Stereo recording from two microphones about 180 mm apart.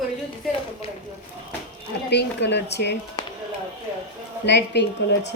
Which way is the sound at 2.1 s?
70° left (ahead or behind).